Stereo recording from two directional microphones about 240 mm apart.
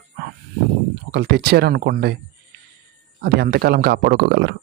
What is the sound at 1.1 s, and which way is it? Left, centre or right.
A man's voice, right.